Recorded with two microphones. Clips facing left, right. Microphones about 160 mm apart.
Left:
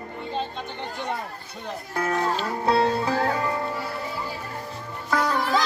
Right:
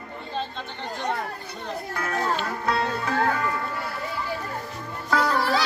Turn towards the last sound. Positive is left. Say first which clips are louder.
# even
turn(degrees=15)  # may be behind; listen again after turning